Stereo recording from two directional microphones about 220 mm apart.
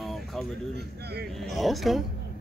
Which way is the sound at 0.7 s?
45° right (ahead or behind).